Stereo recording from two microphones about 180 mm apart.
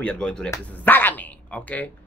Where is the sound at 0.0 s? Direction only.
5° left (ahead or behind).